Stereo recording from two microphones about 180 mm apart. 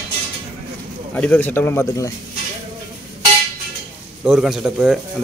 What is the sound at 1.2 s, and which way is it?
Speech, 10° left (ahead or behind).